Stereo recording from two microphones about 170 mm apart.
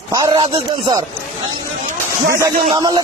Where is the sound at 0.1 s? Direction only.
25° right (ahead or behind).